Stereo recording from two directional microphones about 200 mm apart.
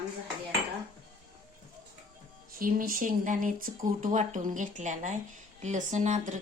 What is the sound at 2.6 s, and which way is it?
Speech, 45° right (ahead or behind).